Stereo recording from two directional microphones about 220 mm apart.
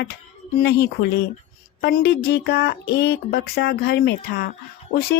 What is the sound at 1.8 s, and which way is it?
Speech, 45° left (ahead or behind).